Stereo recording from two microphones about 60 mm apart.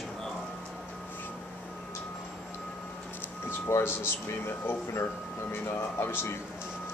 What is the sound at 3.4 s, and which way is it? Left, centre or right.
Speech, left.